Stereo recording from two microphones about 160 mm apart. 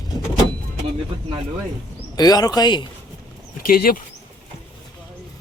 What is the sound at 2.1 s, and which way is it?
Speech, 25° left (ahead or behind).